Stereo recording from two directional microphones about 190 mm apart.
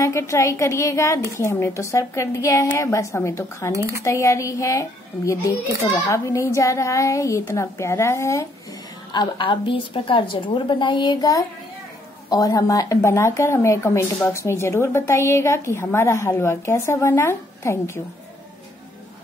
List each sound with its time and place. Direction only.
0.0 s a woman's voice: 15° left (ahead or behind)